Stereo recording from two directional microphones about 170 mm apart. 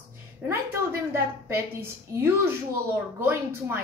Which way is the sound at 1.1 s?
15° right (ahead or behind).